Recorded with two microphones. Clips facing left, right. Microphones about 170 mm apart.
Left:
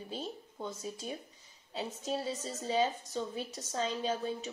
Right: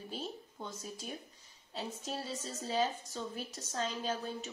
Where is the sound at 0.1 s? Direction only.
Centre (ahead or behind).